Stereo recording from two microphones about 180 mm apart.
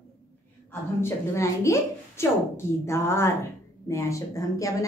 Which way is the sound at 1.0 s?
15° left (ahead or behind).